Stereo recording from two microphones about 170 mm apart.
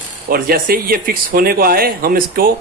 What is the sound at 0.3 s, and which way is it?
Speech, 60° right (ahead or behind).